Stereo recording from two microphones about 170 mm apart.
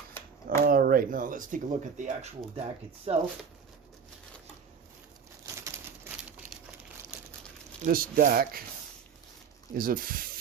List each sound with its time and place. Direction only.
0.6 s speech: 60° right (ahead or behind)
3.1 s speech: 40° right (ahead or behind)
7.9 s speech: 60° right (ahead or behind)
9.7 s speech: 55° right (ahead or behind)